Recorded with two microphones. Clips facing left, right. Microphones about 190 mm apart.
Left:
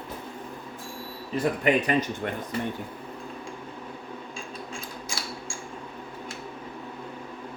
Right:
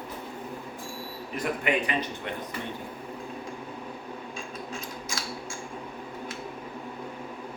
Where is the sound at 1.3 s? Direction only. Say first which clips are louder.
Left 4 dB; 40° left (ahead or behind).